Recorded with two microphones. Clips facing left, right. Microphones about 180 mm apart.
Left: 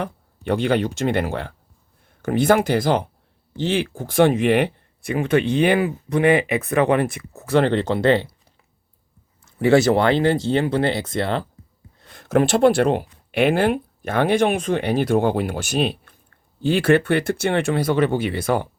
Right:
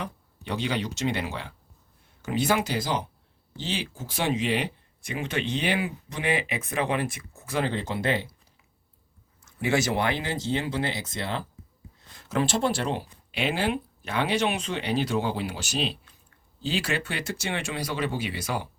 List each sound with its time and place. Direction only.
0.4 s speech: 55° left (ahead or behind); by 8.3 s 70° left (ahead or behind)
9.4 s speech: 60° left (ahead or behind)